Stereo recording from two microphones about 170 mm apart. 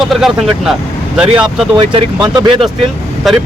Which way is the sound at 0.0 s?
Centre (ahead or behind).